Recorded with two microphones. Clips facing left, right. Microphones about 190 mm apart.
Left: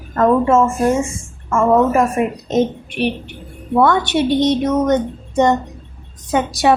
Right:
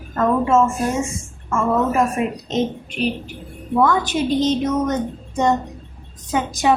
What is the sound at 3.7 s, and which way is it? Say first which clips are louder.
A woman's voice: left 3 dB; 75° left (ahead or behind).